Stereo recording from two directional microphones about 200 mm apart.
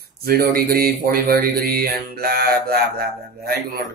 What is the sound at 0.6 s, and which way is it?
Speech, 45° right (ahead or behind).